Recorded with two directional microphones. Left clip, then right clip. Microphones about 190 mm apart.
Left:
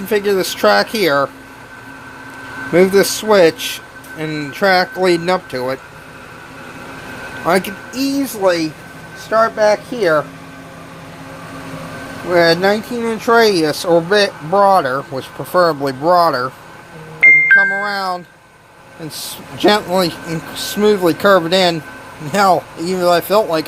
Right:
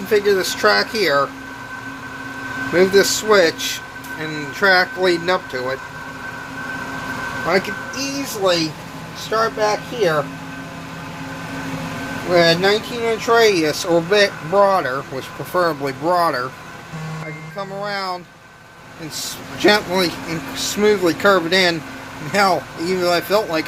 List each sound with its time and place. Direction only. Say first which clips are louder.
0.1 s speech: left 1 dB; 35° left (ahead or behind)
2.7 s speech: left 3 dB; 35° left (ahead or behind)
7.4 s speech: left 4 dB; 45° left (ahead or behind)
12.3 s speech: left 2 dB; 35° left (ahead or behind)
17.6 s speech: left 9 dB; 30° left (ahead or behind)